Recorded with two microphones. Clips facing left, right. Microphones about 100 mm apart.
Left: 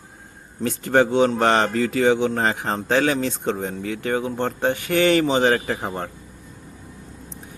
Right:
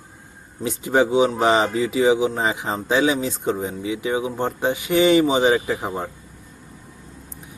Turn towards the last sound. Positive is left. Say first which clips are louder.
# right 1 dB
turn(degrees=-5)  # may be behind; listen again after turning